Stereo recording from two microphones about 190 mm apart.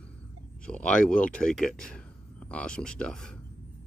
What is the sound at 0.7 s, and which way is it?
Speech, 5° left (ahead or behind).